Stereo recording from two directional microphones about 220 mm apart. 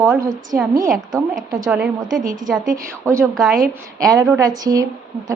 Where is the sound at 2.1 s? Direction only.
40° right (ahead or behind).